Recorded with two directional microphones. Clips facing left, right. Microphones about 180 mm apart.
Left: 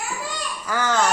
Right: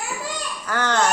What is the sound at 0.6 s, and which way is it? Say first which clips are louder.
Speech: even; 10° left (ahead or behind).